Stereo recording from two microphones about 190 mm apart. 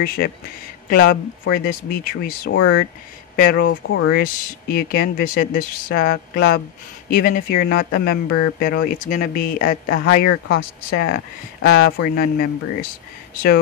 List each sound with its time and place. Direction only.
0.0 s speech: 50° left (ahead or behind)
3.6 s speech: 90° left
4.1 s speech: 50° left (ahead or behind)